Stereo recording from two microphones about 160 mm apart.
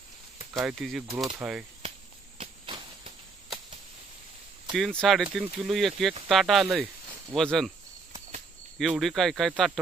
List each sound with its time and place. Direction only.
0.6 s speech: centre (ahead or behind)
2.3 s a sound: 35° right (ahead or behind)
4.7 s speech: centre (ahead or behind)
8.7 s speech: centre (ahead or behind)